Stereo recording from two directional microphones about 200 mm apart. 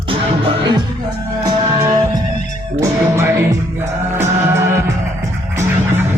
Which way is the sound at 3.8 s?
10° right (ahead or behind).